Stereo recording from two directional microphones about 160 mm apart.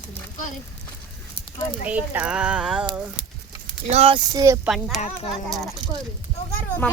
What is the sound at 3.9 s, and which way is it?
Speech, 35° right (ahead or behind).